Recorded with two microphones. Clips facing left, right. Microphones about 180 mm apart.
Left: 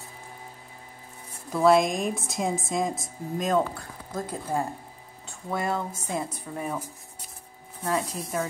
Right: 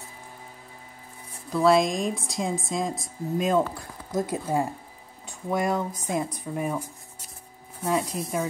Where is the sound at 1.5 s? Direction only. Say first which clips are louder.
Even; centre (ahead or behind).